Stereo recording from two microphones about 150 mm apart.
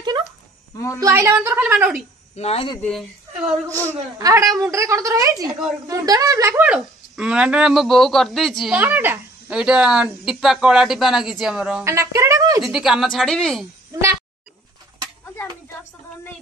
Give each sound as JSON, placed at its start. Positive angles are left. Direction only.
{"t": 0.9, "sound": "a woman's voice", "side_deg": -20}
{"t": 2.3, "sound": "speech", "side_deg": 45}
{"t": 2.8, "sound": "speech", "side_deg": 0}
{"t": 4.2, "sound": "speech", "side_deg": -20}
{"t": 6.6, "sound": "speech", "side_deg": -5}
{"t": 8.7, "sound": "speech", "side_deg": -10}
{"t": 11.8, "sound": "speech", "side_deg": -20}
{"t": 12.6, "sound": "speech", "side_deg": -5}